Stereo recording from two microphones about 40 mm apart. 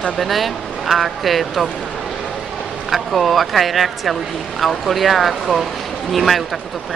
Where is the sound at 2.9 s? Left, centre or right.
Centre.